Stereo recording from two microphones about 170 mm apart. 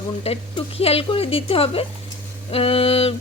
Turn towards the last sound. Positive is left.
turn(degrees=35)  # may be behind; listen again after turning